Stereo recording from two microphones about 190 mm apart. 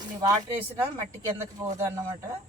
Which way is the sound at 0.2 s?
20° right (ahead or behind).